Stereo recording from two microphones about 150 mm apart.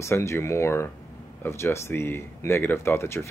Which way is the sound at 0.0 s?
20° left (ahead or behind).